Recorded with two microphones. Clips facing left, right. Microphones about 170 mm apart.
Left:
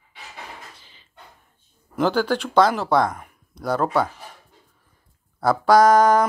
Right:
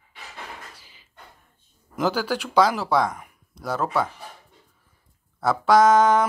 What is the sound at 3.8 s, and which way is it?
Speech, 30° left (ahead or behind).